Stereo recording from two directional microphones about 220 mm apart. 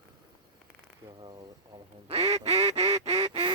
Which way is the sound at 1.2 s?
20° right (ahead or behind).